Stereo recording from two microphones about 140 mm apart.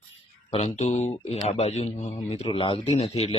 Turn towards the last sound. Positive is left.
turn(degrees=45)  # may be behind; listen again after turning